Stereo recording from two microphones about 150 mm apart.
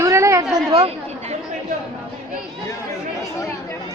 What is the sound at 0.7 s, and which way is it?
Chatter, 45° right (ahead or behind).